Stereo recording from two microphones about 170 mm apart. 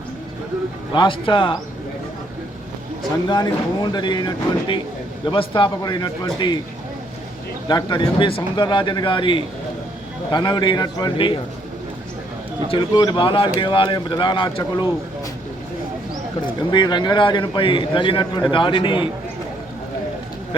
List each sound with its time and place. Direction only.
0.9 s speech: 30° left (ahead or behind)
3.2 s speech: 25° left (ahead or behind)
7.7 s speech: 25° left (ahead or behind)
12.6 s speech: 25° left (ahead or behind)
16.6 s speech: 25° left (ahead or behind)